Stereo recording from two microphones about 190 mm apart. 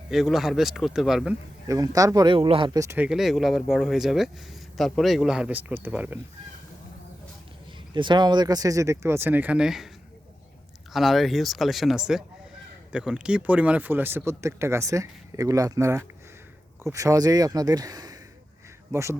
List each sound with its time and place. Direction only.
0.1 s speech: centre (ahead or behind)
1.6 s speech: 20° right (ahead or behind)
7.9 s speech: 25° right (ahead or behind); by 9.9 s centre (ahead or behind)
10.9 s speech: centre (ahead or behind)